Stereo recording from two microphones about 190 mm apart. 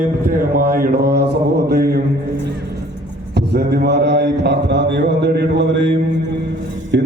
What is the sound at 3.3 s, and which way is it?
Mantra, 60° right (ahead or behind).